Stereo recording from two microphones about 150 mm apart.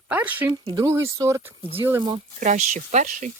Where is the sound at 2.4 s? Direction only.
55° right (ahead or behind).